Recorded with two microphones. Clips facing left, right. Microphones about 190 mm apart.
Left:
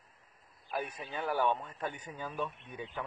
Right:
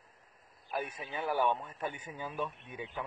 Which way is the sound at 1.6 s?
10° right (ahead or behind).